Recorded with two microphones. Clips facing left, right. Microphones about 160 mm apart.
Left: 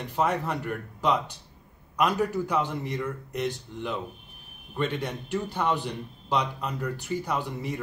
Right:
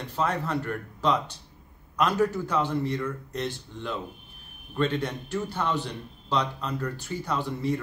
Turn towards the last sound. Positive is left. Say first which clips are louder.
# right 2 dB
turn(degrees=15)  # may be behind; listen again after turning